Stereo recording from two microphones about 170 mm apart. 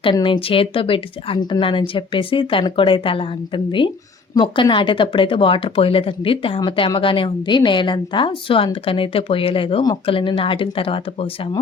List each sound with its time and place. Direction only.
0.0 s a woman's voice: 30° left (ahead or behind)